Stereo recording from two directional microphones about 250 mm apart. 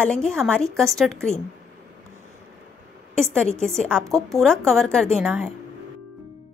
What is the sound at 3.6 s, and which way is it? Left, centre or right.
A woman's voice, centre.